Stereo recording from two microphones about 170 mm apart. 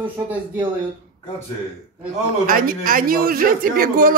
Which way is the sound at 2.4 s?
55° right (ahead or behind).